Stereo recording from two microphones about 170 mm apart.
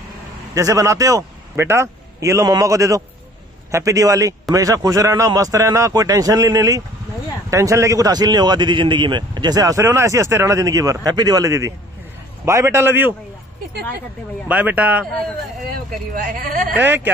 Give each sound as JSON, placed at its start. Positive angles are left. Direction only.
{"t": 0.6, "sound": "a man's voice", "side_deg": -20}
{"t": 14.5, "sound": "a man's voice", "side_deg": -10}
{"t": 16.1, "sound": "speech", "side_deg": -55}
{"t": 16.7, "sound": "a man's voice", "side_deg": -10}